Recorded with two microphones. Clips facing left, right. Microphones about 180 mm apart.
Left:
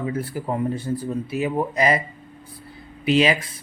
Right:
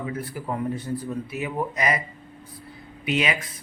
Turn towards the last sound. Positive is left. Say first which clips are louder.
# left 7 dB
turn(degrees=30)  # may be behind; listen again after turning